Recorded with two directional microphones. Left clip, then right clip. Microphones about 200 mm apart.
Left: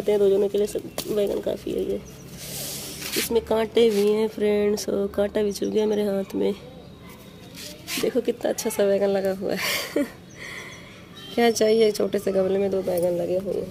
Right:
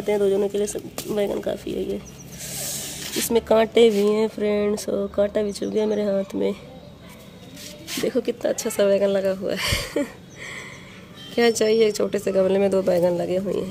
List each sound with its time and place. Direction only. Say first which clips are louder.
0.0 s speech: left 1 dB; 10° right (ahead or behind)
8.0 s speech: right 1 dB; 5° right (ahead or behind)
12.4 s speech: right 4 dB; 20° right (ahead or behind)